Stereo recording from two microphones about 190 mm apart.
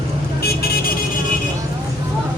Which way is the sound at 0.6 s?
50° left (ahead or behind).